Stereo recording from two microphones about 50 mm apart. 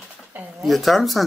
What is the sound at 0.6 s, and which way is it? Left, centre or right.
Speech, centre.